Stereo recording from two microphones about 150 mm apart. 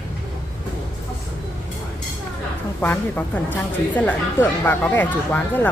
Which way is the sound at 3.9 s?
10° left (ahead or behind).